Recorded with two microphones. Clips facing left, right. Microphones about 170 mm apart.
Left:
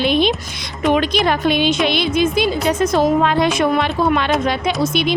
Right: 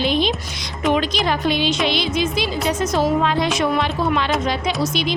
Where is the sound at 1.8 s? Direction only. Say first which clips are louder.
Left 4 dB; 55° left (ahead or behind).